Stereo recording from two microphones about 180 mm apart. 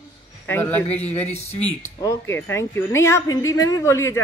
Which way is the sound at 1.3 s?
35° left (ahead or behind).